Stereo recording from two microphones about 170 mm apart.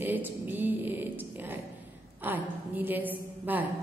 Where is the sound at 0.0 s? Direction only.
10° right (ahead or behind).